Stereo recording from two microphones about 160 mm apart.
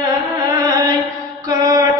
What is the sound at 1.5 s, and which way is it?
Mantra, 25° right (ahead or behind).